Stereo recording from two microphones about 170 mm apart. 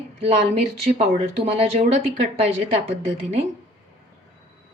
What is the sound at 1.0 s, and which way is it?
A woman's voice, 35° right (ahead or behind).